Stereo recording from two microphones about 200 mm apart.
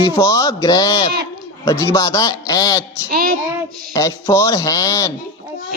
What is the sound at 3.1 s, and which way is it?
Child singing, 45° right (ahead or behind).